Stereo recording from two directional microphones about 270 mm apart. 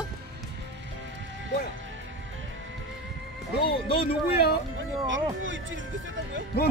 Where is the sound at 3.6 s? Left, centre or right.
Centre.